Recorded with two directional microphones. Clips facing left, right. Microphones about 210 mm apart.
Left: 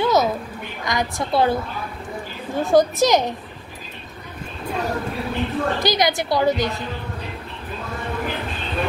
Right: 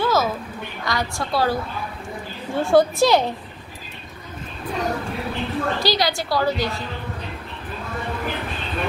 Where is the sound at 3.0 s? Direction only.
15° left (ahead or behind).